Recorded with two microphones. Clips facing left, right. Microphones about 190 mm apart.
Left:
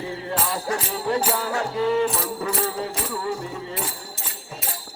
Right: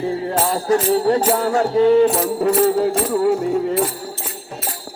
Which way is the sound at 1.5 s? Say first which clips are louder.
Right 9 dB; 40° right (ahead or behind).